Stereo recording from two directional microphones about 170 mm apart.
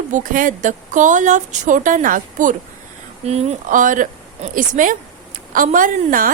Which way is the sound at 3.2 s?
40° right (ahead or behind).